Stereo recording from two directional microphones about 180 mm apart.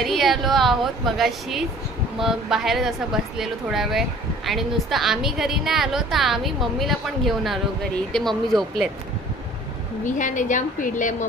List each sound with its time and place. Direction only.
0.0 s a woman's voice: centre (ahead or behind)
10.0 s a woman's voice: 45° left (ahead or behind)